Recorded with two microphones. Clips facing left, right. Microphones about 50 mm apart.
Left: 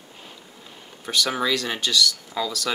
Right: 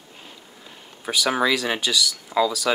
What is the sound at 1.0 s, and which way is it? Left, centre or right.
Speech, centre.